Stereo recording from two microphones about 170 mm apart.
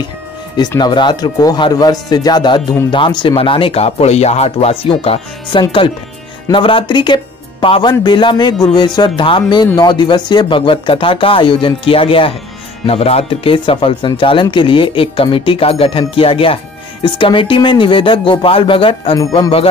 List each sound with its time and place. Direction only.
0.6 s speech: 25° left (ahead or behind)
19.1 s speech: 20° left (ahead or behind)